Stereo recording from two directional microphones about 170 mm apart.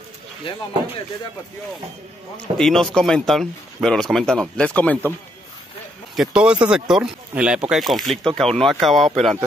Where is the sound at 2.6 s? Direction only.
5° left (ahead or behind).